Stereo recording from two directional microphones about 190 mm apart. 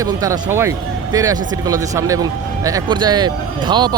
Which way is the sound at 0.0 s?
20° right (ahead or behind).